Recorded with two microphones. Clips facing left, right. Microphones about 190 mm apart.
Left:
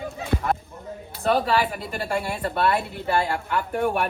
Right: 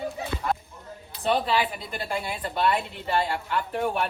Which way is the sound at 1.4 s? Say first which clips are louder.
Left 3 dB; 50° left (ahead or behind).